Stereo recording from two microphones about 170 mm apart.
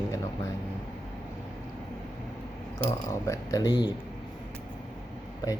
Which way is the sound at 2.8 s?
15° left (ahead or behind).